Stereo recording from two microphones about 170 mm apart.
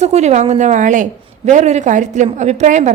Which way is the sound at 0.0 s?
40° right (ahead or behind).